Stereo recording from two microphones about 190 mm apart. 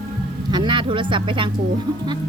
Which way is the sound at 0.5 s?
25° right (ahead or behind).